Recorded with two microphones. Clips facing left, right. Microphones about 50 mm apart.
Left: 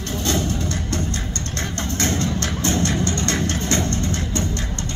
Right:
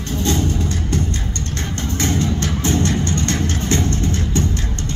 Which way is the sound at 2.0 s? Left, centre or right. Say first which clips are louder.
Right 3 dB; centre.